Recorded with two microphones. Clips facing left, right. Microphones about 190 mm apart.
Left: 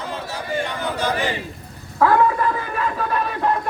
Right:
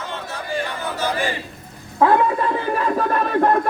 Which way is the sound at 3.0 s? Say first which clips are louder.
Right 4 dB; 50° right (ahead or behind).